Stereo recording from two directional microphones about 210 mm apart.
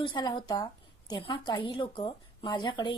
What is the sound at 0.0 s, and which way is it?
A woman's voice, 20° left (ahead or behind).